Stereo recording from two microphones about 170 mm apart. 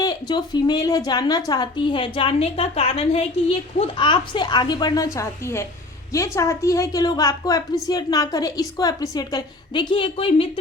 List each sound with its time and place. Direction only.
0.0 s a woman's voice: 25° left (ahead or behind)